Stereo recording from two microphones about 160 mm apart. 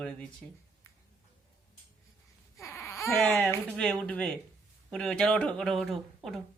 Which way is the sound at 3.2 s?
5° left (ahead or behind).